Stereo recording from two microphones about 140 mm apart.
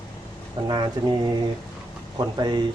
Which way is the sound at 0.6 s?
30° right (ahead or behind).